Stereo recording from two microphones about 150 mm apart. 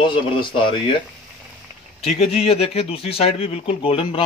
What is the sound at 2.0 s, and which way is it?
A man's voice, 45° left (ahead or behind).